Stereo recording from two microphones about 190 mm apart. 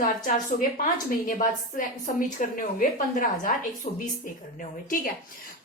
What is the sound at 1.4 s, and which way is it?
A woman's voice, 45° left (ahead or behind).